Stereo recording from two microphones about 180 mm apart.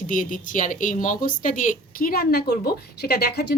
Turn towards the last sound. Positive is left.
turn(degrees=60)  # may be behind; listen again after turning